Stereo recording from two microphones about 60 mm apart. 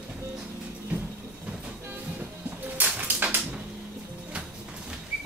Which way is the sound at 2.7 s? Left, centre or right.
Right.